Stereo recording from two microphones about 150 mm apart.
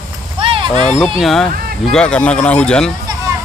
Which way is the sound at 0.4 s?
35° right (ahead or behind).